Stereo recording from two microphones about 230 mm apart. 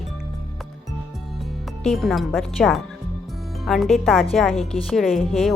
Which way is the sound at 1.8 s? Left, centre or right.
Centre.